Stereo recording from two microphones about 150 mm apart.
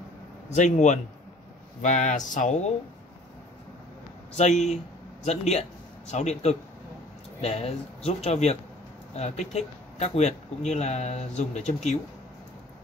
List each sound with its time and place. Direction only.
0.6 s speech: 55° left (ahead or behind)
4.4 s a man's voice: 50° left (ahead or behind)